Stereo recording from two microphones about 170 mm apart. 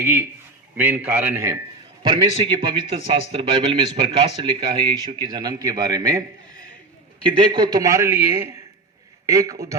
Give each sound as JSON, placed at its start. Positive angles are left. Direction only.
{"t": 0.0, "sound": "a man's voice", "side_deg": -15}
{"t": 2.0, "sound": "speech", "side_deg": -30}
{"t": 7.3, "sound": "speech", "side_deg": -25}